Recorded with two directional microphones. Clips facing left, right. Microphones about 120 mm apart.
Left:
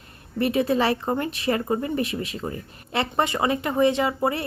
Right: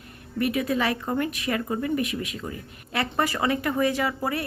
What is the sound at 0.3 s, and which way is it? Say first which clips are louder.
Speech: left 3 dB; 30° left (ahead or behind).